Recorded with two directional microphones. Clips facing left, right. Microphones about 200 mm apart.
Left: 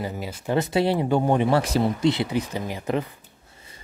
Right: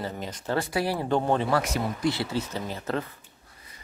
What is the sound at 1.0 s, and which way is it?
Speech, 10° left (ahead or behind).